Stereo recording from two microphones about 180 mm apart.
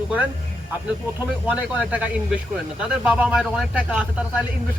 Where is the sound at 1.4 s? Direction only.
10° right (ahead or behind).